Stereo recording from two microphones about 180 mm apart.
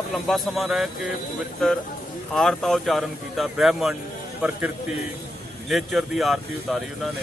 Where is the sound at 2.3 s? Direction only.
Centre (ahead or behind).